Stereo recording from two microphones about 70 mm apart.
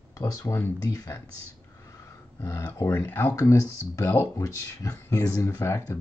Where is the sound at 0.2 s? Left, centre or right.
Left.